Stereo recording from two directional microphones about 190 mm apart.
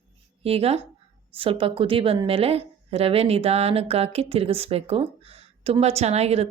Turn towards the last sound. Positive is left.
turn(degrees=-35)  # may be behind; listen again after turning